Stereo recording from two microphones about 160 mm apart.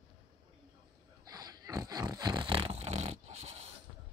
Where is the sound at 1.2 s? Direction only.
25° right (ahead or behind); by 3.6 s 45° right (ahead or behind).